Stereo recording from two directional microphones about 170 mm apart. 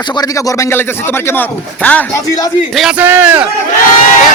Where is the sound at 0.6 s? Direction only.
15° left (ahead or behind).